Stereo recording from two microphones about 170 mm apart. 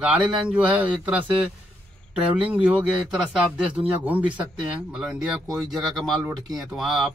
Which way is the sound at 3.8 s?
10° right (ahead or behind).